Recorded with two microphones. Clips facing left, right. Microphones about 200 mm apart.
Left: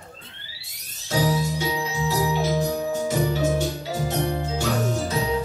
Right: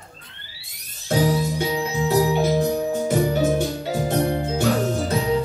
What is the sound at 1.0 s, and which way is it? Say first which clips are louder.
Jingle bell: right 3 dB; 55° right (ahead or behind).